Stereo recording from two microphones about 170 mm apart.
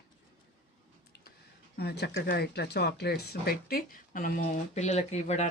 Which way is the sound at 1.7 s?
70° left (ahead or behind).